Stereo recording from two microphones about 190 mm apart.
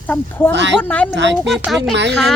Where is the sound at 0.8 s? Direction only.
5° left (ahead or behind).